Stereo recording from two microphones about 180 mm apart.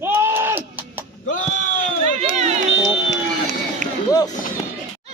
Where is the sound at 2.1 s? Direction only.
35° right (ahead or behind).